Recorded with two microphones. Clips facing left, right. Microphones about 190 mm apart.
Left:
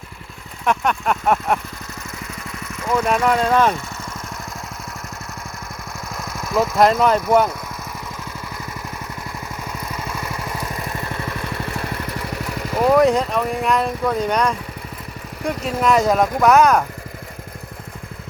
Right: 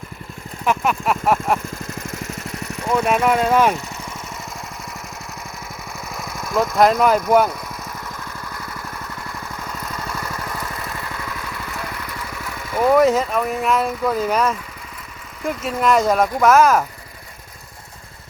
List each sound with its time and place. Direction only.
0.6 s speech: 5° right (ahead or behind)
2.8 s speech: 10° right (ahead or behind)
6.1 s speech: centre (ahead or behind)
10.1 s vehicle: 15° left (ahead or behind); by 12.4 s 30° left (ahead or behind)
12.9 s speech: centre (ahead or behind)